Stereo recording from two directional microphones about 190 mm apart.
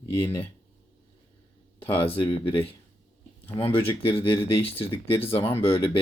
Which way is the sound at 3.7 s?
30° left (ahead or behind).